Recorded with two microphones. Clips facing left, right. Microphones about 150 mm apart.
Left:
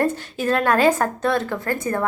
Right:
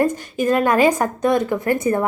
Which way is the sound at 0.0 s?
10° right (ahead or behind).